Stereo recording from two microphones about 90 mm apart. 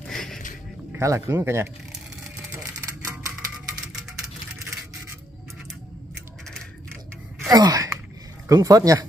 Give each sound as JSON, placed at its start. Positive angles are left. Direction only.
{"t": 0.0, "sound": "a sound", "side_deg": 5}
{"t": 0.9, "sound": "speech", "side_deg": -35}
{"t": 7.4, "sound": "speech", "side_deg": -45}